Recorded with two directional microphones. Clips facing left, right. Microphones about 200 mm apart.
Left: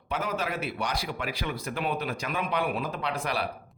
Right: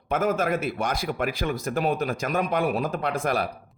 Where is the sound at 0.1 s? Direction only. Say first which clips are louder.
Right 7 dB; 50° right (ahead or behind).